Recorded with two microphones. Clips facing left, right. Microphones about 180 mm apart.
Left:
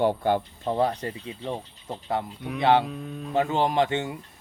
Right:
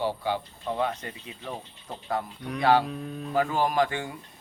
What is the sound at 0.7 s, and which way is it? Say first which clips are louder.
Speech: left 4 dB; 35° left (ahead or behind).